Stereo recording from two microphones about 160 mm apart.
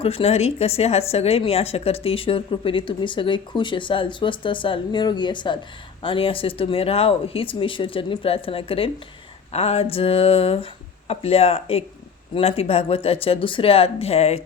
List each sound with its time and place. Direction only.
0.0 s a woman's voice: 35° left (ahead or behind)